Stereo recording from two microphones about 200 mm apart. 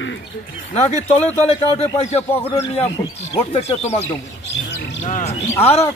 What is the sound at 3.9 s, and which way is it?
Speech, 15° left (ahead or behind).